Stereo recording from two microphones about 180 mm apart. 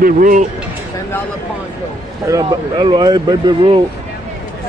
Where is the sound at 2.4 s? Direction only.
25° right (ahead or behind).